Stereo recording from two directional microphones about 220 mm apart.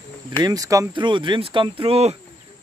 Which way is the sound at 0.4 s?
15° right (ahead or behind).